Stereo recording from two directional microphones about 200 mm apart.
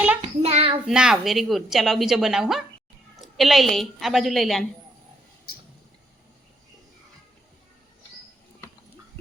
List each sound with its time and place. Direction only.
0.2 s child singing: 30° right (ahead or behind)
0.9 s a woman's voice: 5° right (ahead or behind)